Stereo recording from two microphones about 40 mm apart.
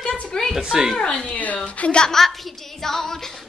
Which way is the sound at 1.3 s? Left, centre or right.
Left.